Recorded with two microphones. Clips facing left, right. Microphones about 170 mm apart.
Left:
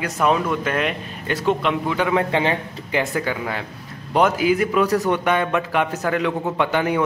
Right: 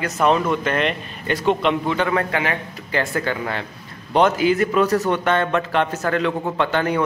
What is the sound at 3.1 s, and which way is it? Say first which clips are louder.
Speech: even; 5° left (ahead or behind).